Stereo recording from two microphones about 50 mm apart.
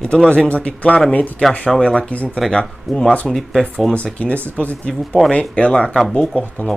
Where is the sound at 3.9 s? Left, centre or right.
Left.